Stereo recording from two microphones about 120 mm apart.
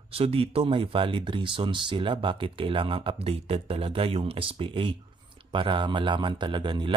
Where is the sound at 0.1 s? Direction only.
50° right (ahead or behind).